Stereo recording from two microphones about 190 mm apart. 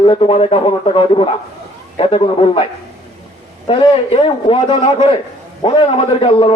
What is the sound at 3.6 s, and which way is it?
A man's voice, 25° left (ahead or behind).